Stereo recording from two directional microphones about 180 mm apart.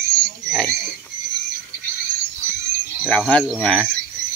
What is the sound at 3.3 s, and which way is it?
Speech, 5° left (ahead or behind).